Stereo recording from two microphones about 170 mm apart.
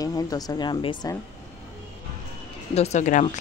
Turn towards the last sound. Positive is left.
turn(degrees=45)  # may be behind; listen again after turning